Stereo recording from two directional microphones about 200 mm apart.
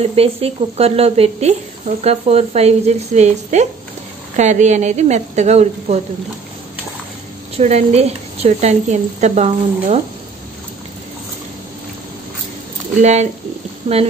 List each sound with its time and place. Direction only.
0.0 s a woman's voice: 30° right (ahead or behind)
7.5 s a woman's voice: 30° right (ahead or behind)
13.0 s a woman's voice: 35° right (ahead or behind)